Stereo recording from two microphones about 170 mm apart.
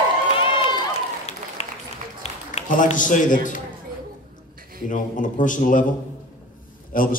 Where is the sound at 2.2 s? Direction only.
45° left (ahead or behind).